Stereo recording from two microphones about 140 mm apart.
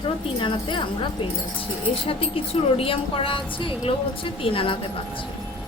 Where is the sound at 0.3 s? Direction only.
35° left (ahead or behind).